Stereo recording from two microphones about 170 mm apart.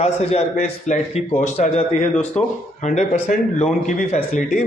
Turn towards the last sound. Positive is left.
turn(degrees=50)  # may be behind; listen again after turning